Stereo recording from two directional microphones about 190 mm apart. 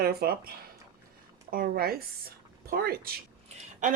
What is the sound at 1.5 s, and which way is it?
Speech, 50° right (ahead or behind).